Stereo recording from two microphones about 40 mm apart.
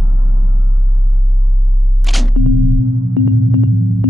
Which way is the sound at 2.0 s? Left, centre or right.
Centre.